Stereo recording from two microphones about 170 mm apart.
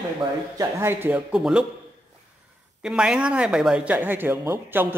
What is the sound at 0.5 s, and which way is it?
Speech, 15° right (ahead or behind).